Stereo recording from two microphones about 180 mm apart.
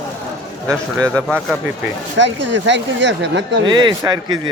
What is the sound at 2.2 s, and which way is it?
Speech, 90° right.